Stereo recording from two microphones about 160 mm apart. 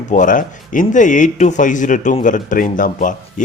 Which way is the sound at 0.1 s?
55° left (ahead or behind).